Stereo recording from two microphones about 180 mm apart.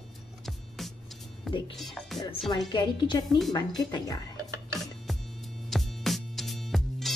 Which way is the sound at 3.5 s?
20° left (ahead or behind).